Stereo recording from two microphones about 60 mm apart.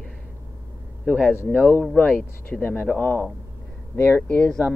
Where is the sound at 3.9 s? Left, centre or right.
Left.